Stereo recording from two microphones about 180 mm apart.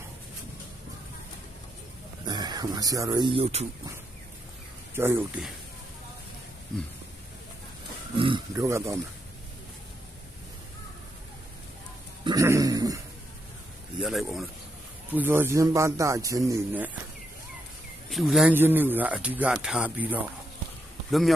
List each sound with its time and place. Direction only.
2.2 s speech: 20° right (ahead or behind)
4.9 s speech: 10° right (ahead or behind)
6.7 s speech: 5° left (ahead or behind)
8.1 s speech: 30° right (ahead or behind)
8.5 s speech: 15° right (ahead or behind)
12.2 s dog: 20° right (ahead or behind)
14.0 s speech: centre (ahead or behind)
15.1 s speech: 10° right (ahead or behind)
18.1 s speech: centre (ahead or behind)